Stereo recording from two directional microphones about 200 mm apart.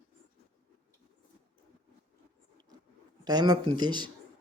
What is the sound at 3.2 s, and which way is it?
Speech, 20° right (ahead or behind).